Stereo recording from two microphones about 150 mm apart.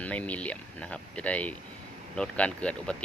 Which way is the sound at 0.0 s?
10° left (ahead or behind).